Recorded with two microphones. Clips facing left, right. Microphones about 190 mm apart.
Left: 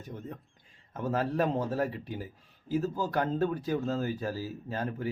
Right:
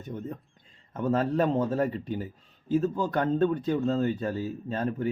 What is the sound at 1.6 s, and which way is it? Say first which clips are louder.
Speech: right 4 dB; 25° right (ahead or behind).